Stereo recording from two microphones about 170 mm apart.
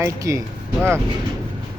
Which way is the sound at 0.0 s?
20° right (ahead or behind).